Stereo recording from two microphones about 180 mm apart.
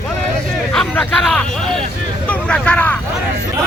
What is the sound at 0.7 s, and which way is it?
Hubbub, 5° left (ahead or behind).